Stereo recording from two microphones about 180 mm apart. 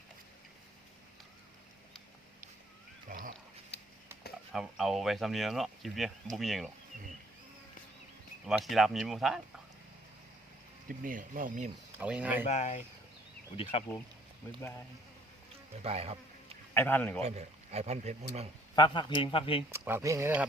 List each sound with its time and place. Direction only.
3.1 s wild animals: 65° right (ahead or behind)
3.7 s a sound: 70° left (ahead or behind)
4.5 s speech: centre (ahead or behind)
8.4 s speech: centre (ahead or behind)
10.8 s speech: 50° right (ahead or behind)
11.9 s speech: 5° right (ahead or behind)
12.5 s speech: 40° left (ahead or behind)
15.7 s speech: 35° right (ahead or behind)
16.7 s a man's voice: 10° left (ahead or behind)
17.2 s speech: 35° right (ahead or behind)
18.8 s speech: 25° left (ahead or behind)
19.8 s speech: 15° right (ahead or behind)